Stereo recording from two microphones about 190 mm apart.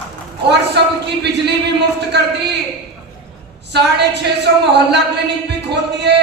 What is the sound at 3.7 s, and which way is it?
A woman's voice, 60° right (ahead or behind).